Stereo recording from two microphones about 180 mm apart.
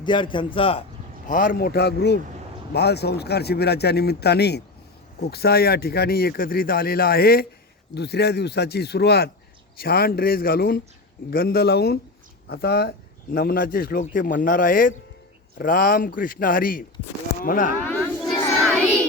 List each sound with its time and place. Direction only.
0.0 s a man's voice: 25° left (ahead or behind)
1.3 s speech: 50° left (ahead or behind)
18.0 s a sound: centre (ahead or behind)